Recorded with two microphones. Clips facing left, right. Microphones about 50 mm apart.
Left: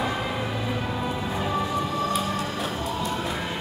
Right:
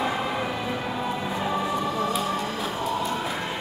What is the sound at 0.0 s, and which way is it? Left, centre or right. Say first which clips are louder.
Music: right 1 dB; centre.